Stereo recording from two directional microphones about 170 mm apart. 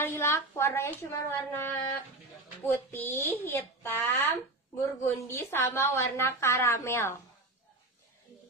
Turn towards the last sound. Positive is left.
turn(degrees=15)  # may be behind; listen again after turning